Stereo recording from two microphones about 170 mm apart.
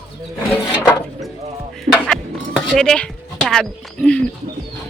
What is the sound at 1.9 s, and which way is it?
Music, centre (ahead or behind).